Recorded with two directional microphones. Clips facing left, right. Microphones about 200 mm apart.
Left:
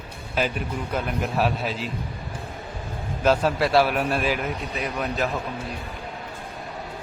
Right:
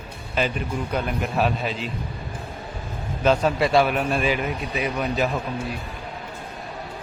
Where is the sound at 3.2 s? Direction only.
5° left (ahead or behind).